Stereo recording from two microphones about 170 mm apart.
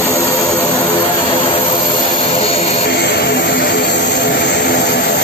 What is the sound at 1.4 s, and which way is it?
Aircraft, 30° left (ahead or behind).